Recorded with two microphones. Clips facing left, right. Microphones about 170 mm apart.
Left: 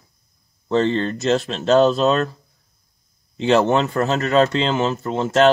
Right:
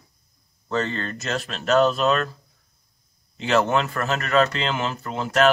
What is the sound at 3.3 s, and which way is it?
Speech, 25° left (ahead or behind).